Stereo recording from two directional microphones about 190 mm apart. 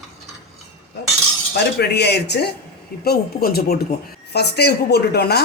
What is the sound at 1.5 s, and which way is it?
Speech, 60° left (ahead or behind).